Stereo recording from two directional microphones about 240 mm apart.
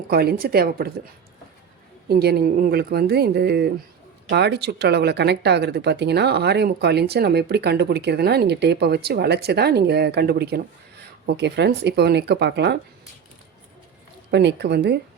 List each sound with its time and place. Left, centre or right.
0.1 s speech: right
2.0 s speech: right
14.3 s speech: right